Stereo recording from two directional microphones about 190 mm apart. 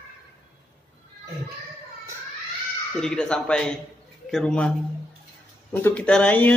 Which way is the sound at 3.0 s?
5° left (ahead or behind).